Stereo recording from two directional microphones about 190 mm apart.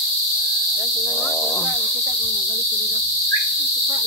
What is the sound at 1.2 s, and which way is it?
Wild animals, 5° left (ahead or behind).